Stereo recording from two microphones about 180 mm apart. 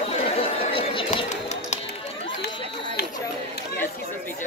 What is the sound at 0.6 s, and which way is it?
Chatter, 30° left (ahead or behind).